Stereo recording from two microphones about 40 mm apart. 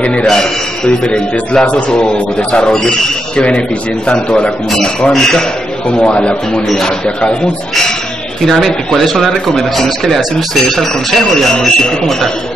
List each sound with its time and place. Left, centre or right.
0.0 s a man's voice: left
4.8 s speech: centre
5.9 s a man's voice: left
8.5 s speech: centre
11.5 s speech: centre